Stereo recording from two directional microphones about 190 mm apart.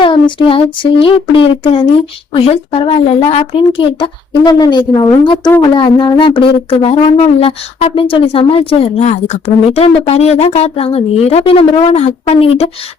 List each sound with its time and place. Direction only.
0.0 s speech: 25° left (ahead or behind)